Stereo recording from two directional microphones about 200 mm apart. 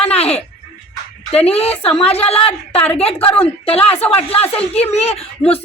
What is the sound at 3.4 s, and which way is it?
Speech, 30° left (ahead or behind).